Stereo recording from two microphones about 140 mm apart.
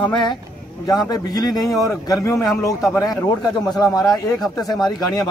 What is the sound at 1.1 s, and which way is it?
A man's voice, 25° left (ahead or behind).